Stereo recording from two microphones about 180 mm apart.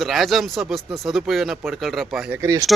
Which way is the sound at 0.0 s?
Centre (ahead or behind).